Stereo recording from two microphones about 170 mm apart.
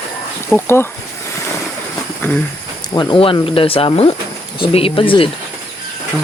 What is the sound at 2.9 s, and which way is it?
Speech, 30° left (ahead or behind).